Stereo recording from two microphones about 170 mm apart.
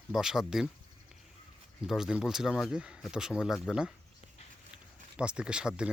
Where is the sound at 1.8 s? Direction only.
Centre (ahead or behind).